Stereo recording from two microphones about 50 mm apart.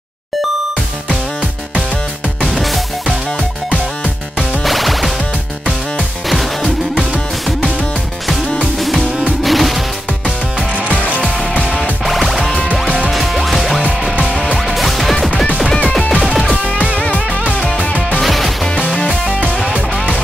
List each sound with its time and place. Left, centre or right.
2.5 s music: centre
4.6 s music: centre
8.7 s music: centre
12.1 s music: centre
14.2 s music: centre
14.7 s music: centre
15.7 s music: centre
17.0 s music: left
18.2 s music: centre